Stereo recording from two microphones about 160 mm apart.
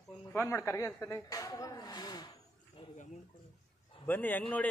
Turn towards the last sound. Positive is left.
turn(degrees=10)  # may be behind; listen again after turning